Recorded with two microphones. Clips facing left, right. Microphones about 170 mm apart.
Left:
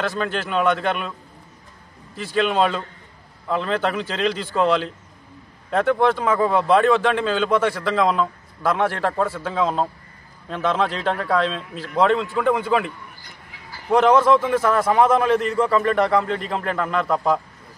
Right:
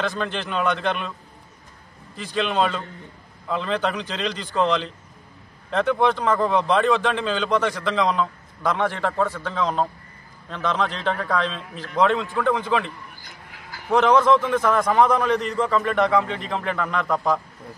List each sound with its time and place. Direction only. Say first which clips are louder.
0.2 s speech: left 3 dB; 5° left (ahead or behind)
2.1 s a man's voice: left 3 dB; 5° left (ahead or behind)
13.9 s speech: left 2 dB; 5° left (ahead or behind)